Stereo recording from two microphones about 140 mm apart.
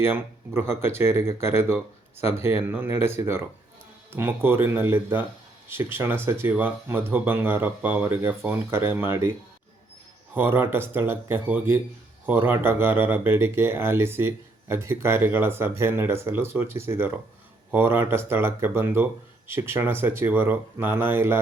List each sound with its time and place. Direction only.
0.0 s speech: 15° right (ahead or behind)
10.3 s speech: 15° right (ahead or behind)